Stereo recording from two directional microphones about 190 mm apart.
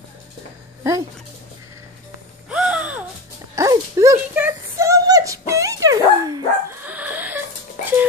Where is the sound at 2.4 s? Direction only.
5° right (ahead or behind).